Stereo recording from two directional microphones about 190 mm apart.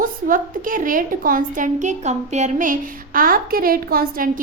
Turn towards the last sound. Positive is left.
turn(degrees=-50)  # may be behind; listen again after turning